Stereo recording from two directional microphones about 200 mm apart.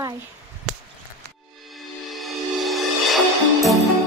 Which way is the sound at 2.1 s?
Centre (ahead or behind).